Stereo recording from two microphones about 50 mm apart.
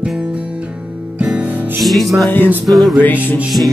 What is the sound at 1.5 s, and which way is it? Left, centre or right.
Music, right.